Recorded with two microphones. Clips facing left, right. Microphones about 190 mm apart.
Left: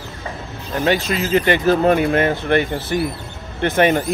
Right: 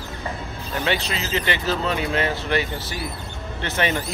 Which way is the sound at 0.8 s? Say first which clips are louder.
Left 7 dB; 45° left (ahead or behind).